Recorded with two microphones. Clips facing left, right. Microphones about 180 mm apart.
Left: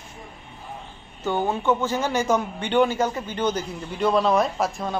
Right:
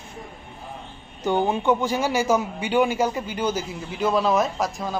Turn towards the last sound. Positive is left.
turn(degrees=0)  # may be behind; listen again after turning